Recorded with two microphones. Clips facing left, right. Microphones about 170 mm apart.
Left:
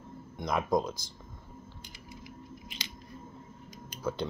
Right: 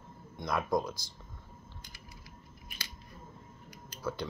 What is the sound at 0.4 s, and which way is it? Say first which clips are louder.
Speech: left 2 dB; 20° left (ahead or behind).